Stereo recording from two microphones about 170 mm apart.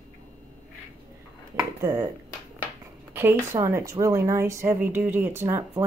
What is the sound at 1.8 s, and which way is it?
Speech, 20° right (ahead or behind).